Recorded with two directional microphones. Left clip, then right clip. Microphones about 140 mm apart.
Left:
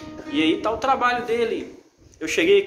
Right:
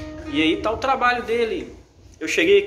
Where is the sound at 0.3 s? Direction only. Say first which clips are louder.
Right 1 dB; 5° left (ahead or behind).